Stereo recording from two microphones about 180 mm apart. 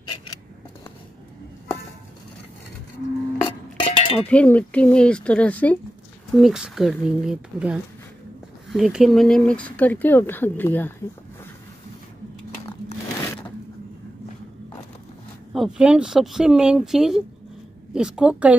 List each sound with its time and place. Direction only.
3.4 s a sound: 30° left (ahead or behind)
4.2 s speech: 5° left (ahead or behind)
6.3 s speech: centre (ahead or behind)
15.5 s speech: 5° right (ahead or behind)